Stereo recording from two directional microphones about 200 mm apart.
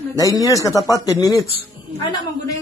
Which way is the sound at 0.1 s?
15° left (ahead or behind).